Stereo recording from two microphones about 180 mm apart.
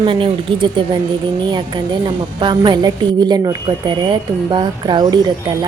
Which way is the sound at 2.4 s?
25° right (ahead or behind).